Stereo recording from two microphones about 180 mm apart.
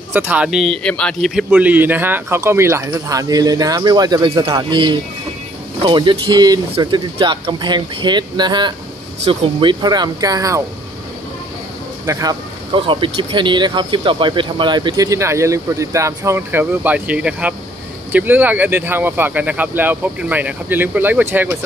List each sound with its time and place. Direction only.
0.1 s a man's voice: 10° right (ahead or behind)
12.1 s a man's voice: 20° right (ahead or behind)